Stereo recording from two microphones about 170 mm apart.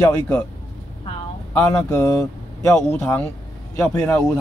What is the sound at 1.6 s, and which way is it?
Speech, 20° left (ahead or behind).